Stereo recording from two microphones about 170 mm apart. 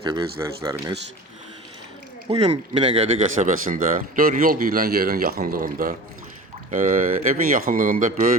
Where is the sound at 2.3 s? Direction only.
35° right (ahead or behind).